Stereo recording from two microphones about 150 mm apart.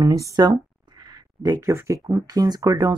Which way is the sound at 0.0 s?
25° right (ahead or behind).